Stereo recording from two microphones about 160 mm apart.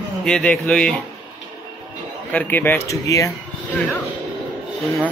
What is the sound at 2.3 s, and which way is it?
A man's voice, 10° left (ahead or behind).